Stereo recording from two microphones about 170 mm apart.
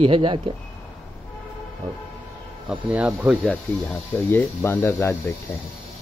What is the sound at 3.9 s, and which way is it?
Speech, 10° left (ahead or behind).